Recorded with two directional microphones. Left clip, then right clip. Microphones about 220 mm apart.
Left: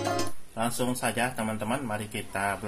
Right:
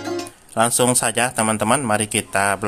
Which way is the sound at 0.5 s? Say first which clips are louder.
Right 13 dB; 50° right (ahead or behind).